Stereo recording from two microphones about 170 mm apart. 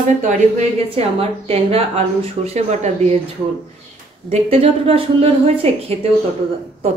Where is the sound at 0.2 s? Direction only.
40° right (ahead or behind).